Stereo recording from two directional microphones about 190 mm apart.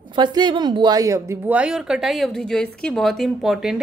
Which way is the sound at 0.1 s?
25° right (ahead or behind).